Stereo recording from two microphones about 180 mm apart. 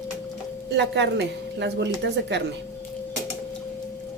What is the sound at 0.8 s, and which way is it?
A woman's voice, 75° right (ahead or behind).